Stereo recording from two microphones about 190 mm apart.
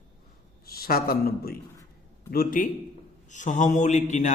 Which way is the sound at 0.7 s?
50° left (ahead or behind).